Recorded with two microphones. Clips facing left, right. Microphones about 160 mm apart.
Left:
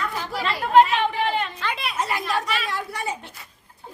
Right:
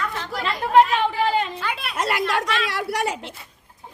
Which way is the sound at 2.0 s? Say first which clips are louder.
Right 4 dB; 80° right.